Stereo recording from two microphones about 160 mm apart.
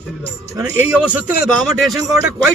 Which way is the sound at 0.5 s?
20° right (ahead or behind).